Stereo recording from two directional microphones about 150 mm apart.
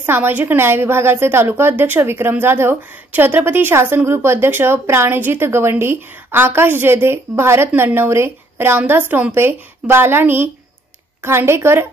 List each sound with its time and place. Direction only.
0.0 s a woman's voice: 15° right (ahead or behind)